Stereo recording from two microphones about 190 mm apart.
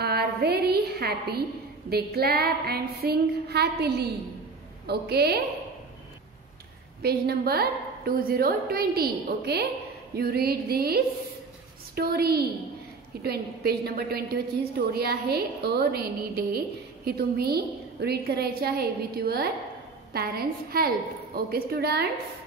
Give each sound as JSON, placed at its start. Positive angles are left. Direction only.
{"t": 0.0, "sound": "a woman's voice", "side_deg": -55}
{"t": 7.0, "sound": "a woman's voice", "side_deg": -55}